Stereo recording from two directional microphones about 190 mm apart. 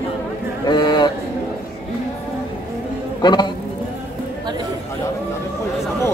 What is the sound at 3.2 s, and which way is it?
Music, 25° left (ahead or behind).